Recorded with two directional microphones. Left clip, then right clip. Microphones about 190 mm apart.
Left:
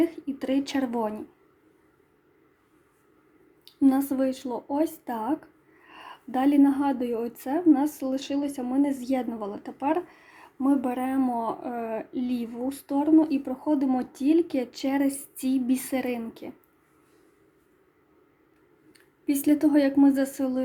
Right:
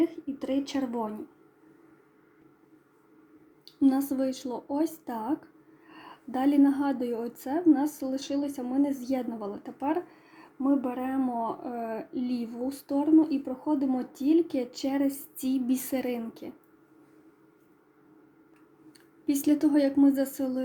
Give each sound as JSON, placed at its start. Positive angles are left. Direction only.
{"t": 0.0, "sound": "a sound", "side_deg": 25}
{"t": 3.8, "sound": "a woman's voice", "side_deg": 10}
{"t": 19.2, "sound": "a woman's voice", "side_deg": 10}